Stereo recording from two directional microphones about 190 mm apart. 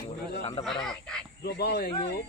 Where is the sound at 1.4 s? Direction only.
60° left (ahead or behind).